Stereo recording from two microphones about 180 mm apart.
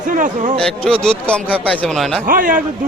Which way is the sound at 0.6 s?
5° left (ahead or behind).